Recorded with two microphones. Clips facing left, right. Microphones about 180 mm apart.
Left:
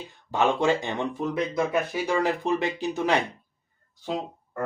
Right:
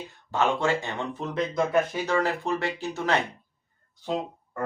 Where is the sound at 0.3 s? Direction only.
15° left (ahead or behind).